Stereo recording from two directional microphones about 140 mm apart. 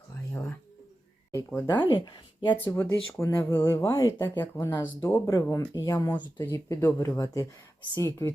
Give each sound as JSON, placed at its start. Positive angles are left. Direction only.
{"t": 1.3, "sound": "speech", "side_deg": 20}
{"t": 1.8, "sound": "speech", "side_deg": 35}
{"t": 2.6, "sound": "speech", "side_deg": 15}